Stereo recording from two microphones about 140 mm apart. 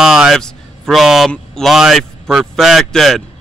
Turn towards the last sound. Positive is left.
turn(degrees=0)  # may be behind; listen again after turning